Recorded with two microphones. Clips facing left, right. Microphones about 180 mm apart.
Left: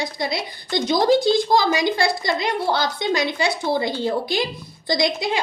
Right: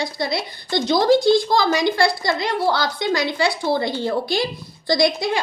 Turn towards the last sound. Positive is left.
turn(degrees=20)  # may be behind; listen again after turning